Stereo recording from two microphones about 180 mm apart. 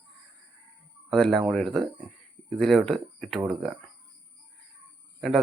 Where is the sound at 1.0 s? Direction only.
Centre (ahead or behind).